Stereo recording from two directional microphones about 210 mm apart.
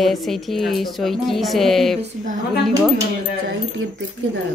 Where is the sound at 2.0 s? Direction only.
35° right (ahead or behind).